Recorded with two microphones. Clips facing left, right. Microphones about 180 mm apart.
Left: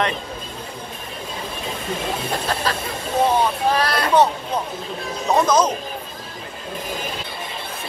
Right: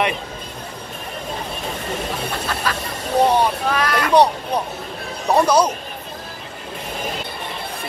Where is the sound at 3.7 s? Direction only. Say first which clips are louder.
Even; 35° left (ahead or behind).